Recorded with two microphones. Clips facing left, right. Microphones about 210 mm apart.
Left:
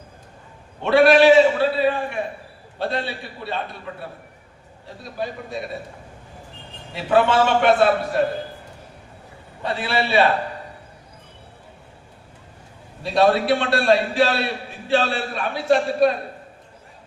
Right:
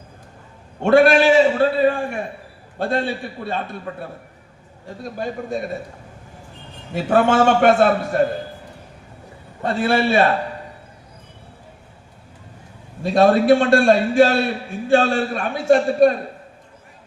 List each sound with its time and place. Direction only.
0.8 s a man's voice: 45° right (ahead or behind)
5.0 s a man's voice: 50° right (ahead or behind)
6.9 s a man's voice: 45° right (ahead or behind)
9.6 s a man's voice: 45° right (ahead or behind)
13.0 s a man's voice: 50° right (ahead or behind)